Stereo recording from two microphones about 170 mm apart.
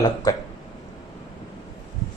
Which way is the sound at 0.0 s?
20° left (ahead or behind).